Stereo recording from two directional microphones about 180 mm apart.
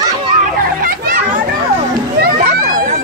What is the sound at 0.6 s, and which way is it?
Speech, 55° right (ahead or behind).